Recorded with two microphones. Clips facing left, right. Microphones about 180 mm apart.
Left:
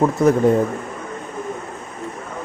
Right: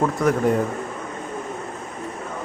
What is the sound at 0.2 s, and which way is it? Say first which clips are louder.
Speech: left 5 dB; 25° left (ahead or behind).